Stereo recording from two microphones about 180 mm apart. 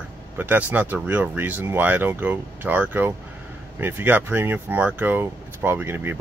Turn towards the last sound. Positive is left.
turn(degrees=-10)  # may be behind; listen again after turning